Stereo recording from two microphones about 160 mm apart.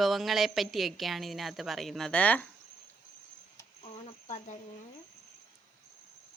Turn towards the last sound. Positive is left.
turn(degrees=45)  # may be behind; listen again after turning